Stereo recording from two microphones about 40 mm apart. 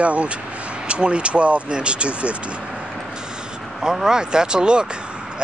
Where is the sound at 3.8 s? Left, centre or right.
Centre.